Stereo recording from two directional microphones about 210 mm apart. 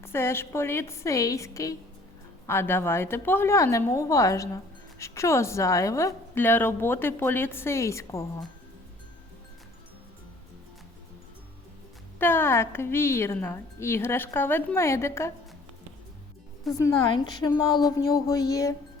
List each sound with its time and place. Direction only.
0.0 s a woman's voice: 10° left (ahead or behind)
12.2 s a woman's voice: 10° left (ahead or behind)
16.7 s a woman's voice: 15° left (ahead or behind)